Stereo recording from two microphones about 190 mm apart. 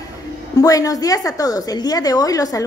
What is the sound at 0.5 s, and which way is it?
A woman's voice, 20° left (ahead or behind).